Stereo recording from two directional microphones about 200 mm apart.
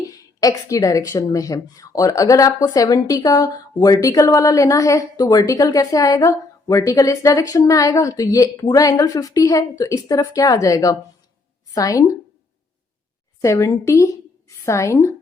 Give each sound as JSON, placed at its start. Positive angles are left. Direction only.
{"t": 0.0, "sound": "a woman's voice", "side_deg": 15}
{"t": 13.4, "sound": "a woman's voice", "side_deg": 15}